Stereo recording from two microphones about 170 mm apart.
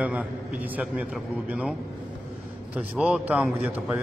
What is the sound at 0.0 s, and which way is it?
A man's voice, 10° right (ahead or behind).